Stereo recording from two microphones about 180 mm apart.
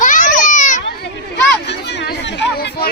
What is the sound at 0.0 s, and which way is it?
Children playing, 45° left (ahead or behind).